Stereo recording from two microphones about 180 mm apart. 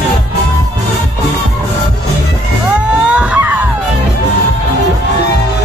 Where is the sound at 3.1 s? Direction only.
5° right (ahead or behind).